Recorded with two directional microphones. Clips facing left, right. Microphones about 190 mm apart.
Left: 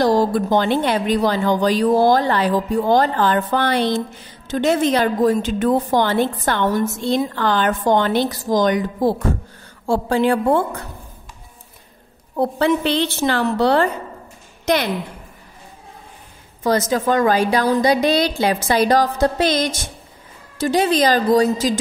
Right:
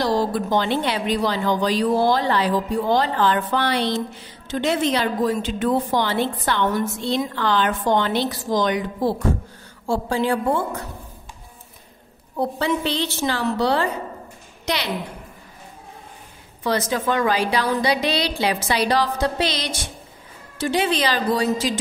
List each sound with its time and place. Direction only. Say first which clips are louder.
0.0 s a woman's voice: left 5 dB; 45° left (ahead or behind)
9.8 s a woman's voice: left 4 dB; 60° left (ahead or behind)
12.4 s a woman's voice: left 5 dB; 60° left (ahead or behind)
16.6 s a woman's voice: left 4 dB; 45° left (ahead or behind)